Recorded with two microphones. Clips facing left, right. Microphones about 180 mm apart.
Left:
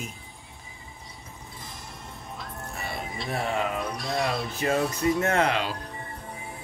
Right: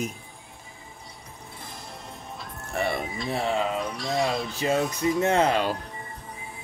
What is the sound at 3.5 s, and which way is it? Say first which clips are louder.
Speech: right 2 dB; 25° right (ahead or behind).